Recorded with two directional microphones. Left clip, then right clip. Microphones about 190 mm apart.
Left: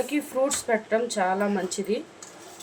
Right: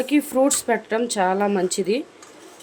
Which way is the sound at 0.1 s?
50° right (ahead or behind).